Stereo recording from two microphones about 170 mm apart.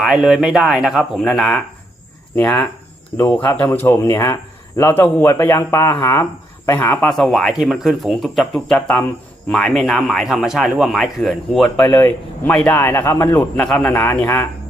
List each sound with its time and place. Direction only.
0.0 s a man's voice: centre (ahead or behind)